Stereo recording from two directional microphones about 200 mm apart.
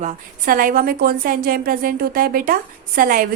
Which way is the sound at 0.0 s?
45° right (ahead or behind).